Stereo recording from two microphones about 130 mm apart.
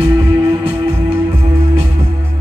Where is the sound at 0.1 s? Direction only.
20° right (ahead or behind).